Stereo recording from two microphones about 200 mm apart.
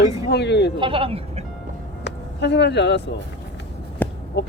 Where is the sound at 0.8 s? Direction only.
25° right (ahead or behind).